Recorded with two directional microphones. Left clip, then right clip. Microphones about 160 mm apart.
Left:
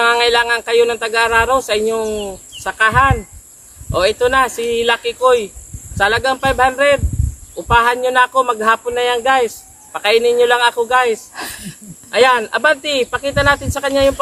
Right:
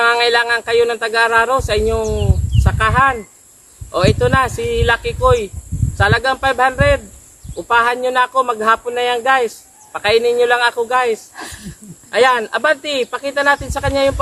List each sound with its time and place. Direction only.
0.0 s speech: 25° left (ahead or behind)